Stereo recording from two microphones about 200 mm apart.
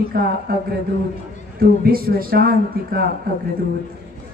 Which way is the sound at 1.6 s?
50° right (ahead or behind).